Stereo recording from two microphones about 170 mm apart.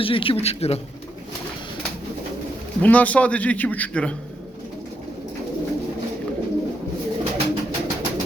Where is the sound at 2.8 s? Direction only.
10° left (ahead or behind).